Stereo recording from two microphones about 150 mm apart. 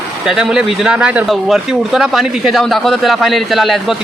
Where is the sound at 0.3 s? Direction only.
5° right (ahead or behind).